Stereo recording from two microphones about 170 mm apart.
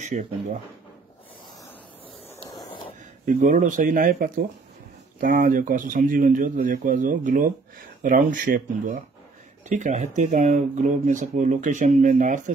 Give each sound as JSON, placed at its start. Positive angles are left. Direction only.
{"t": 3.3, "sound": "speech", "side_deg": -50}